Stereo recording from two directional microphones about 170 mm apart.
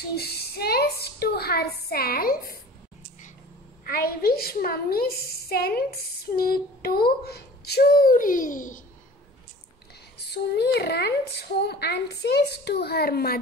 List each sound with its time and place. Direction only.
0.1 s a woman's voice: 70° left (ahead or behind)
3.8 s a woman's voice: 60° left (ahead or behind)
10.1 s a child's voice: 75° left (ahead or behind)